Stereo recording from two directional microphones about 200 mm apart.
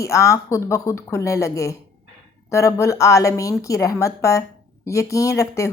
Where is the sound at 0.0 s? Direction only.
15° left (ahead or behind).